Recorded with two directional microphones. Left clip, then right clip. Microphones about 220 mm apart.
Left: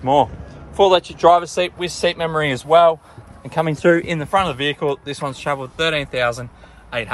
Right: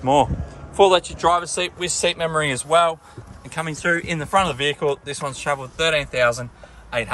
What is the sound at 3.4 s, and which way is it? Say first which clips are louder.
Speech: left 6 dB; 10° left (ahead or behind).